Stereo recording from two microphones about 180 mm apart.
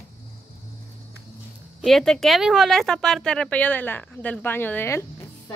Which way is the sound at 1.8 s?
Centre (ahead or behind).